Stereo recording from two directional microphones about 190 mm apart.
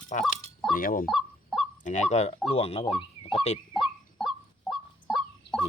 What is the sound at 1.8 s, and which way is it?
Speech, 40° left (ahead or behind).